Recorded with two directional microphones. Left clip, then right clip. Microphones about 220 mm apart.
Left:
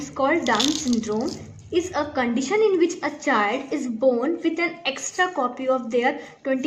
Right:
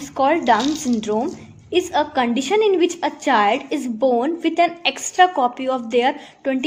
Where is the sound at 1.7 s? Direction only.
35° right (ahead or behind).